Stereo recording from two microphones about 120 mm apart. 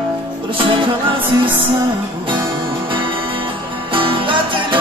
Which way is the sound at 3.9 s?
45° right (ahead or behind).